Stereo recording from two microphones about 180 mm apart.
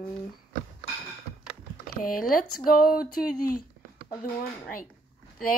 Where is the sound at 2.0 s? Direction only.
55° left (ahead or behind).